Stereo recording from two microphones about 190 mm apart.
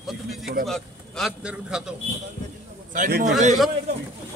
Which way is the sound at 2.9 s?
45° right (ahead or behind).